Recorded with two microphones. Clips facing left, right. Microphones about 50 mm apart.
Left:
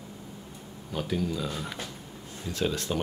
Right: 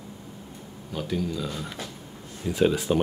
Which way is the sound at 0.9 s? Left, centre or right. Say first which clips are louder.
Right 1 dB; centre.